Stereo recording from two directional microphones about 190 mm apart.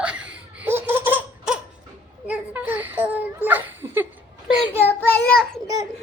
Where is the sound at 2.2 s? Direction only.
10° right (ahead or behind).